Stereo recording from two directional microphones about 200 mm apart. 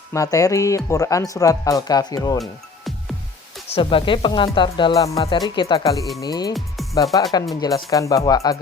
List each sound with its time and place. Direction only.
0.1 s speech: 15° left (ahead or behind)
3.7 s speech: 25° left (ahead or behind)